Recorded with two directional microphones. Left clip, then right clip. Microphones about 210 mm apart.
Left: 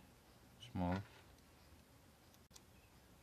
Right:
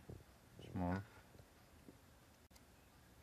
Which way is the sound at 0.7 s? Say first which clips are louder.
Left 1 dB; 25° left (ahead or behind).